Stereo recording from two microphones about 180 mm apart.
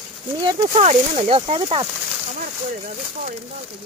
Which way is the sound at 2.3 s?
45° right (ahead or behind).